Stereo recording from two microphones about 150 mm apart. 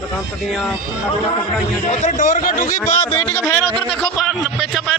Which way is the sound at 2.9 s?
50° left (ahead or behind).